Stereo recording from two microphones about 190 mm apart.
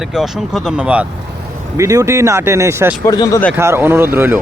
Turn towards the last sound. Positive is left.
turn(degrees=-10)  # may be behind; listen again after turning